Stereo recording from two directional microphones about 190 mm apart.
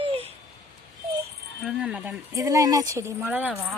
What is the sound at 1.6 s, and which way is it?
Speech, 5° right (ahead or behind).